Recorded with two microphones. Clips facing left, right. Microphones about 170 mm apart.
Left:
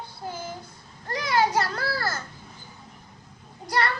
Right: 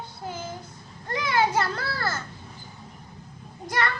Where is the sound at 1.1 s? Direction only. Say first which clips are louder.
Even; 25° right (ahead or behind).